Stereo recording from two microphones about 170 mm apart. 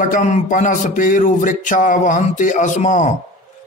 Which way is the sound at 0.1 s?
50° left (ahead or behind).